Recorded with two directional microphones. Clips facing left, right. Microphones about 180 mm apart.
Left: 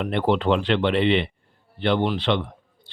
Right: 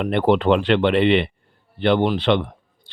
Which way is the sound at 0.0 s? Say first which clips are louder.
Right 4 dB; 60° right (ahead or behind).